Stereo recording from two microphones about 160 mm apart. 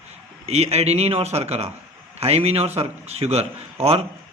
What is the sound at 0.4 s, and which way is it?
A man's voice, 40° right (ahead or behind).